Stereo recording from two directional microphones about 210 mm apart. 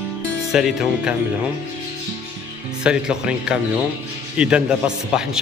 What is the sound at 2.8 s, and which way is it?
A man's voice, 5° right (ahead or behind).